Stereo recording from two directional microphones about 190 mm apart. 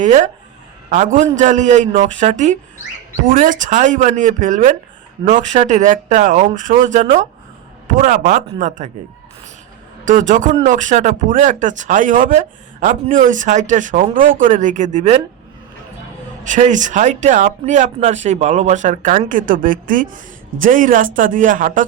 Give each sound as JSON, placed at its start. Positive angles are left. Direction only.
{"t": 0.0, "sound": "speech", "side_deg": -40}
{"t": 10.1, "sound": "speech", "side_deg": -40}
{"t": 16.4, "sound": "speech", "side_deg": -40}